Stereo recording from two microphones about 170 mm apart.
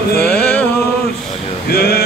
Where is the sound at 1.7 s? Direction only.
65° left (ahead or behind).